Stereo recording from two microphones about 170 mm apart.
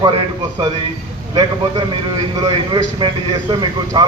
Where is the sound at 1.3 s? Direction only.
30° right (ahead or behind).